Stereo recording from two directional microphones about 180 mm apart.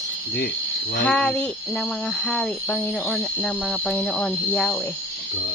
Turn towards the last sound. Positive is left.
turn(degrees=10)  # may be behind; listen again after turning